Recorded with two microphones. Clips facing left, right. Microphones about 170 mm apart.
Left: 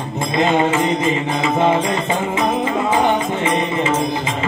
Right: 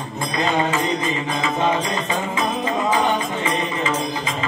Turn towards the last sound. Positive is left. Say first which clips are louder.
# left 4 dB
turn(degrees=30)  # may be behind; listen again after turning